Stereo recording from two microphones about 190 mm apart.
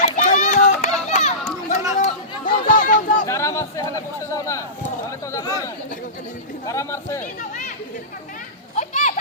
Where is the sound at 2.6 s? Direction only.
45° left (ahead or behind).